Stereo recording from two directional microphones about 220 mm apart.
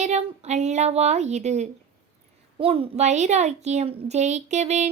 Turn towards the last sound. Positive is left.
turn(degrees=-30)  # may be behind; listen again after turning